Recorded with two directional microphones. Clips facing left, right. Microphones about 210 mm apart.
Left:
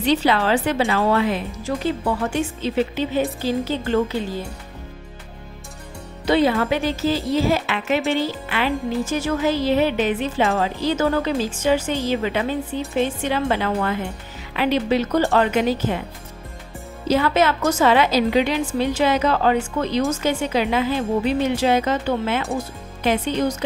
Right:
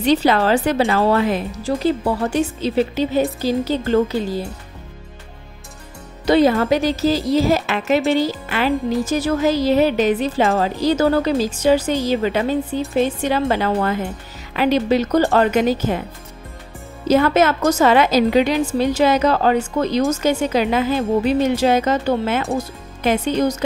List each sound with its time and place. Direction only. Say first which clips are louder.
0.0 s speech: right 3 dB; 40° right (ahead or behind)
6.2 s a woman's voice: right 4 dB; 40° right (ahead or behind)
17.1 s a woman's voice: right 4 dB; 45° right (ahead or behind)